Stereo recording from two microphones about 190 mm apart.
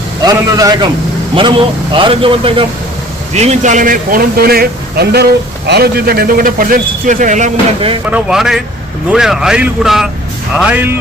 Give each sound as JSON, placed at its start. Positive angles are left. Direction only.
{"t": 0.2, "sound": "speech", "side_deg": -20}
{"t": 8.1, "sound": "speech", "side_deg": -5}